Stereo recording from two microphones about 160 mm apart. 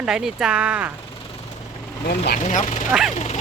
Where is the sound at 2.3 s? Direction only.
50° left (ahead or behind).